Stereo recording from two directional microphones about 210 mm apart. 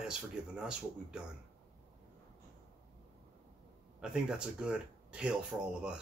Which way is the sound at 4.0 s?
5° right (ahead or behind).